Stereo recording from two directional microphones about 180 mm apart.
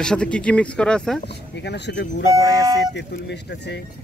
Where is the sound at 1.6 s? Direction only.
70° left (ahead or behind).